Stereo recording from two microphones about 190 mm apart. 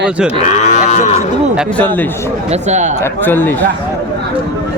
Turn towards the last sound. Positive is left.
turn(degrees=10)  # may be behind; listen again after turning